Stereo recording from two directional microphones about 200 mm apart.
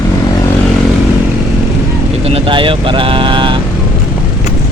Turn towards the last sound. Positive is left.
turn(degrees=-25)  # may be behind; listen again after turning